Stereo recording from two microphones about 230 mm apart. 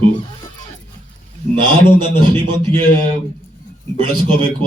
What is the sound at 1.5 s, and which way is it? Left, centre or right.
A man's voice, right.